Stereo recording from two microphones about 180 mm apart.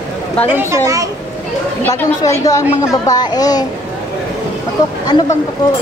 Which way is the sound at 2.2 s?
20° left (ahead or behind).